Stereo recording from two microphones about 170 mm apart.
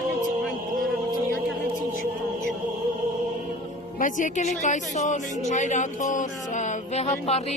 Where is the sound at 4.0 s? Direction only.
45° left (ahead or behind).